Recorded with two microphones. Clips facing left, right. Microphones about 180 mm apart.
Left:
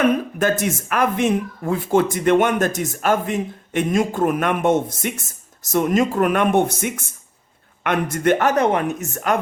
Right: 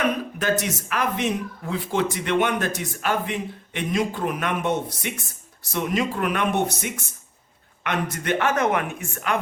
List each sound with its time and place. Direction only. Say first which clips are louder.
0.0 s speech: left 6 dB; 50° left (ahead or behind)